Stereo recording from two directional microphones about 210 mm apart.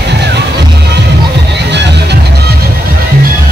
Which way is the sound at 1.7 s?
55° right (ahead or behind).